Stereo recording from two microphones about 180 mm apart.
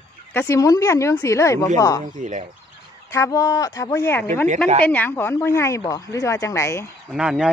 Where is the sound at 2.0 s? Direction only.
45° right (ahead or behind).